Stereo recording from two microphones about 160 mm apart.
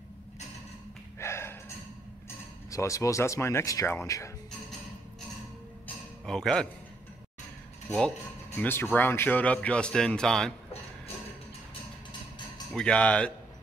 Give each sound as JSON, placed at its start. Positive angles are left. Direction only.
{"t": 1.2, "sound": "a sound", "side_deg": 15}
{"t": 2.2, "sound": "speech", "side_deg": 20}
{"t": 6.2, "sound": "a man's voice", "side_deg": 5}
{"t": 8.5, "sound": "a man's voice", "side_deg": 10}
{"t": 12.7, "sound": "a man's voice", "side_deg": 5}